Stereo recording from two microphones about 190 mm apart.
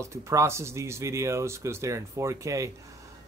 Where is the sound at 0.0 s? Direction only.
15° right (ahead or behind).